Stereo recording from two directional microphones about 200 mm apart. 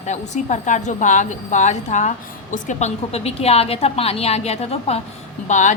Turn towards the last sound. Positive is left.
turn(degrees=35)  # may be behind; listen again after turning